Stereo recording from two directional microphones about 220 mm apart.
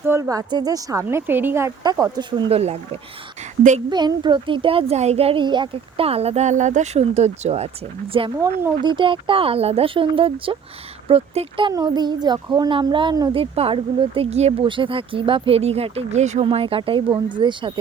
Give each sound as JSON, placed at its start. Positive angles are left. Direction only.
{"t": 0.0, "sound": "a woman's voice", "side_deg": -10}